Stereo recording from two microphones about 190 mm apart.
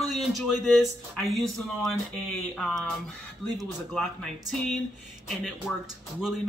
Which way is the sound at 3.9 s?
5° left (ahead or behind).